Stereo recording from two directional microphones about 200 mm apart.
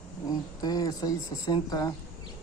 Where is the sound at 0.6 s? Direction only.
20° left (ahead or behind).